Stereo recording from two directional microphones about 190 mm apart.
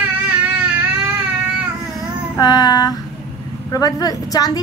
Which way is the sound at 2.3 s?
20° left (ahead or behind).